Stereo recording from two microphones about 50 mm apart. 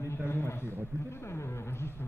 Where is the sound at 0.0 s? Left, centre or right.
Left.